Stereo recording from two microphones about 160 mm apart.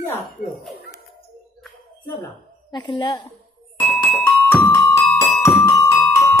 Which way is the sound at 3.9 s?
10° left (ahead or behind).